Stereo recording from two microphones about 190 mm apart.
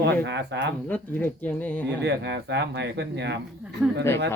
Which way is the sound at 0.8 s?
10° left (ahead or behind).